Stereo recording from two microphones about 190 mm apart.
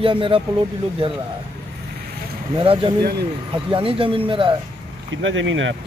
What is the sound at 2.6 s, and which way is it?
Speech, 25° right (ahead or behind).